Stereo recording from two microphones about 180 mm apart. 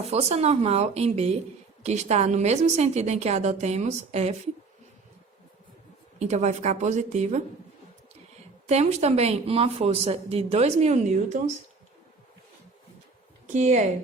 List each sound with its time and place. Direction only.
0.1 s speech: 35° right (ahead or behind)
6.1 s speech: 40° right (ahead or behind)
8.6 s speech: 35° right (ahead or behind)
13.5 s speech: 40° right (ahead or behind)